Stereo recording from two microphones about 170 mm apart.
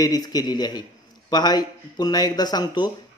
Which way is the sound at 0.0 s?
20° left (ahead or behind).